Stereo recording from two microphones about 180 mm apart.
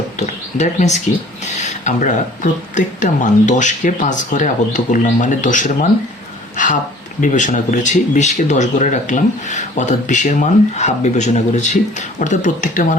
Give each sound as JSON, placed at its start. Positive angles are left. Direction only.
{"t": 0.2, "sound": "speech", "side_deg": 40}
{"t": 6.6, "sound": "a sound", "side_deg": 45}
{"t": 7.2, "sound": "speech", "side_deg": 45}